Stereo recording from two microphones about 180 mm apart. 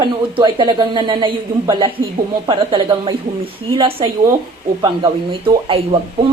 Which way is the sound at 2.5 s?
30° right (ahead or behind).